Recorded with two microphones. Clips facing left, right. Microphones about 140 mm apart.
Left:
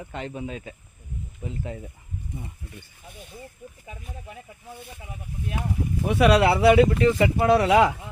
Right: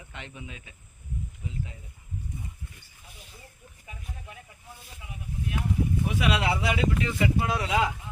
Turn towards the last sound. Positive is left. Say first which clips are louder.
# left 9 dB
turn(degrees=70)  # may be behind; listen again after turning